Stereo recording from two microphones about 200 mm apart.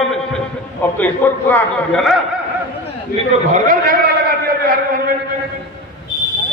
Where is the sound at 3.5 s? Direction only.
45° right (ahead or behind).